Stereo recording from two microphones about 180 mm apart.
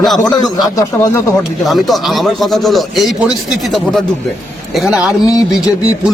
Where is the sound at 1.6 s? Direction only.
Centre (ahead or behind).